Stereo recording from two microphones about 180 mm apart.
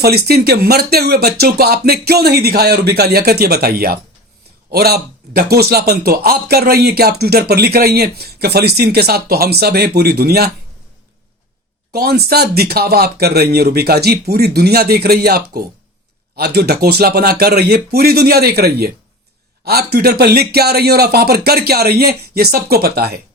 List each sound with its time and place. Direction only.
0.0 s speech: 60° right (ahead or behind)
11.9 s speech: 60° right (ahead or behind)